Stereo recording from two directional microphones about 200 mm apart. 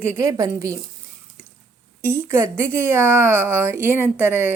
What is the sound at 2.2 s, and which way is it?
A woman's voice, 10° right (ahead or behind).